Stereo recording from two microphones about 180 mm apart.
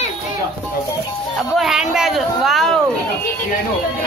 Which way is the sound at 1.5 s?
Centre (ahead or behind).